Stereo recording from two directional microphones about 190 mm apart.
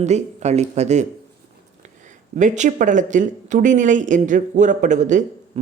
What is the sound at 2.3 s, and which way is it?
Speech, 40° right (ahead or behind).